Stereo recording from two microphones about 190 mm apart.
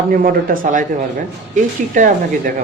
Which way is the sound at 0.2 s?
45° right (ahead or behind).